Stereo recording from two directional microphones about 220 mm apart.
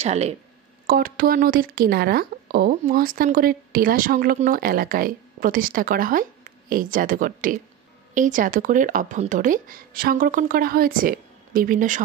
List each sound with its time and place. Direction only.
0.0 s speech: 30° right (ahead or behind)
0.8 s a woman's voice: 40° right (ahead or behind)